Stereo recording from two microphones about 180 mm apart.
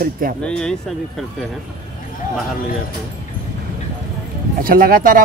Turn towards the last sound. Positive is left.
turn(degrees=-50)  # may be behind; listen again after turning